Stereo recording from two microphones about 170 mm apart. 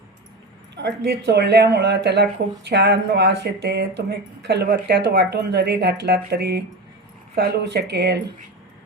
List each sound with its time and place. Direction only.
0.8 s speech: 85° right